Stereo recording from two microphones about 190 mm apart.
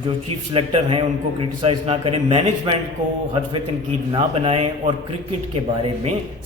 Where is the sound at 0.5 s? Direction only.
30° right (ahead or behind).